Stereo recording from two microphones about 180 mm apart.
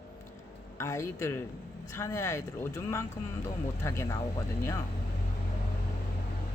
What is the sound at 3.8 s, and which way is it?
Speech, 15° left (ahead or behind).